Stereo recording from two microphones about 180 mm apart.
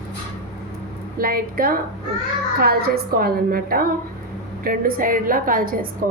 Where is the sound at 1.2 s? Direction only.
55° right (ahead or behind).